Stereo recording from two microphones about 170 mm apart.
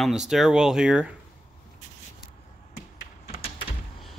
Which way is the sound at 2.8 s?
60° left (ahead or behind).